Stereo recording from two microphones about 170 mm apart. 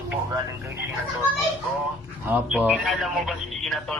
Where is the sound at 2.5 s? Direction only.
5° right (ahead or behind).